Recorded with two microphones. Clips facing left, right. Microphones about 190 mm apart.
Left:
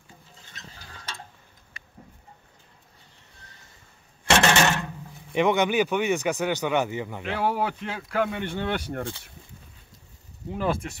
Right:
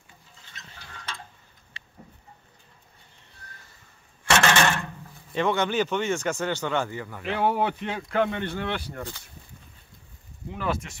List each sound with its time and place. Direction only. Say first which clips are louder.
4.6 s speech: left 1 dB; 20° left (ahead or behind)
7.2 s speech: right 2 dB; centre (ahead or behind)
8.6 s speech: left 3 dB; 45° left (ahead or behind)
10.5 s speech: left 3 dB; 35° left (ahead or behind)